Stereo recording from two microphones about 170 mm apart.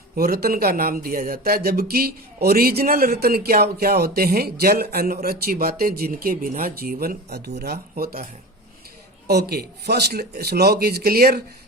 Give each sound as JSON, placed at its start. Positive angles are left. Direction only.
{"t": 0.2, "sound": "speech", "side_deg": -65}